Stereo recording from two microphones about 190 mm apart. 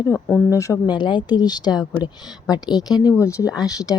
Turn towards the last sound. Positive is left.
turn(degrees=20)  # may be behind; listen again after turning